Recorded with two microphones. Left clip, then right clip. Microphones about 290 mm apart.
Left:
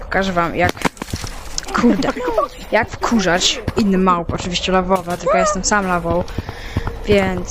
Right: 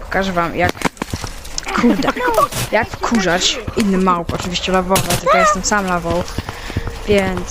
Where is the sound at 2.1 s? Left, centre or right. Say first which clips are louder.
Right 4 dB; right.